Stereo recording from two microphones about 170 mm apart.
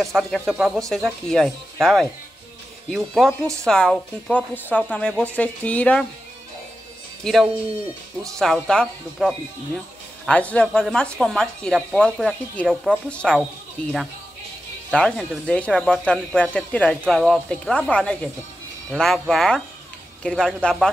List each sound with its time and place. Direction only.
0.0 s speech: centre (ahead or behind)
3.3 s speech: 15° right (ahead or behind)
3.6 s a woman's voice: 5° left (ahead or behind)
8.4 s speech: 5° left (ahead or behind)
14.9 s a woman's voice: 5° left (ahead or behind)